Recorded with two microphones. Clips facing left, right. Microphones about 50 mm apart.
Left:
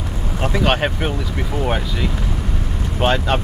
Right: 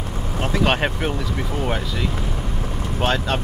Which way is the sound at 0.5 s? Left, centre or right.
Centre.